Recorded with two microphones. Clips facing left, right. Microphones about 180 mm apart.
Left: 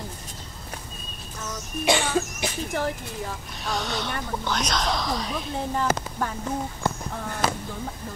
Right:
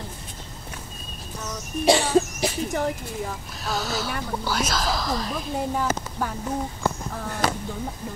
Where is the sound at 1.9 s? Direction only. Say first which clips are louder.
Right 4 dB; 35° right (ahead or behind).